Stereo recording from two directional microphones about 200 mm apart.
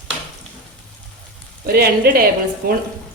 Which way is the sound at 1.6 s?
50° right (ahead or behind).